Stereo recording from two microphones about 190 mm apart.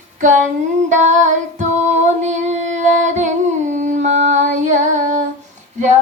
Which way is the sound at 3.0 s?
40° right (ahead or behind).